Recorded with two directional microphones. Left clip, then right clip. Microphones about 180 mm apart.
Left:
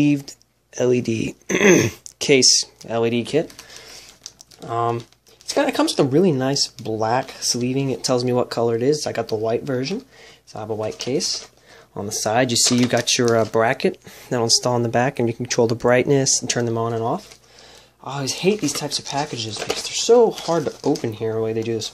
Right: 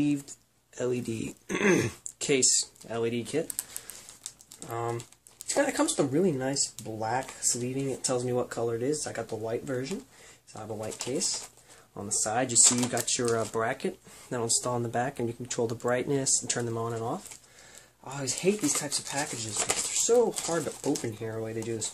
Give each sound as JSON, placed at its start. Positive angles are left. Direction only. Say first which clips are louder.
{"t": 0.0, "sound": "speech", "louder": "left 10 dB", "side_deg": 25}
{"t": 4.6, "sound": "speech", "louder": "left 11 dB", "side_deg": 30}